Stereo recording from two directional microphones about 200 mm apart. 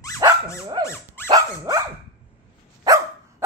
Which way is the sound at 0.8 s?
10° left (ahead or behind).